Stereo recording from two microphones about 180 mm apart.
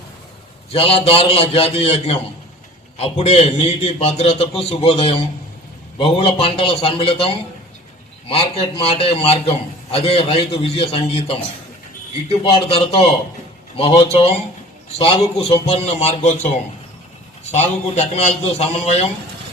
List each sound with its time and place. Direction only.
0.7 s a man's voice: 30° left (ahead or behind)
17.5 s a man's voice: 40° left (ahead or behind)